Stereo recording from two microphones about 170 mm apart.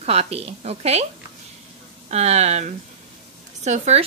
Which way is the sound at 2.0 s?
40° right (ahead or behind).